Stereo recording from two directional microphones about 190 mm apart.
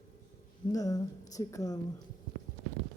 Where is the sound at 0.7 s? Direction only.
20° left (ahead or behind).